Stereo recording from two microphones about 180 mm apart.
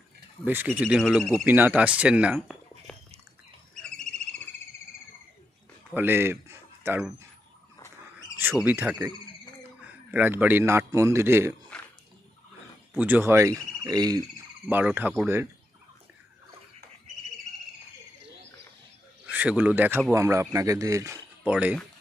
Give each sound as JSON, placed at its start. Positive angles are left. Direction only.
{"t": 0.5, "sound": "speech", "side_deg": -10}
{"t": 3.8, "sound": "bird", "side_deg": 5}
{"t": 5.9, "sound": "a man's voice", "side_deg": -10}
{"t": 8.4, "sound": "a man's voice", "side_deg": -10}
{"t": 12.9, "sound": "speech", "side_deg": -10}
{"t": 14.7, "sound": "speech", "side_deg": -10}
{"t": 19.2, "sound": "speech", "side_deg": -10}